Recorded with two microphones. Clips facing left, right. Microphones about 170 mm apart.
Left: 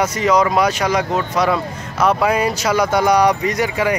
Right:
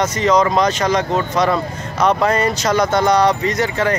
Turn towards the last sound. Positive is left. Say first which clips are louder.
# even
turn(degrees=10)  # may be behind; listen again after turning